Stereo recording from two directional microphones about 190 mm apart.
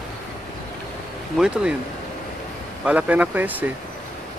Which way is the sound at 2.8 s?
10° right (ahead or behind).